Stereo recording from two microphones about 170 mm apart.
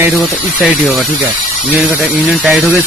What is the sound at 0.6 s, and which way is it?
A man's voice, centre (ahead or behind).